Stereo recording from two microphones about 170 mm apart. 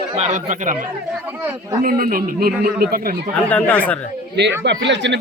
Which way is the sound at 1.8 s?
55° right (ahead or behind).